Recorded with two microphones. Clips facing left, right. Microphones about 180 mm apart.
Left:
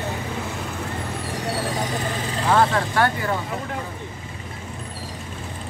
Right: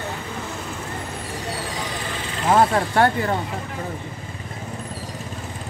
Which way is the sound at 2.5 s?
25° right (ahead or behind).